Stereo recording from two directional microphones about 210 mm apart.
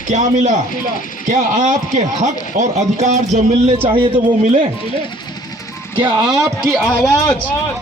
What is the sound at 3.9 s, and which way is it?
Speech, 25° right (ahead or behind).